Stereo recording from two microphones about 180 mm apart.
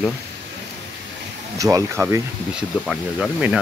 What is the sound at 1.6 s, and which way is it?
Speech, 20° right (ahead or behind).